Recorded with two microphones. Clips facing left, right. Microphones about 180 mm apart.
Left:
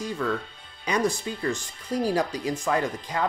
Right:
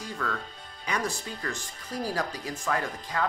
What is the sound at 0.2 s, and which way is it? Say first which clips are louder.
Speech: left 6 dB; 20° left (ahead or behind).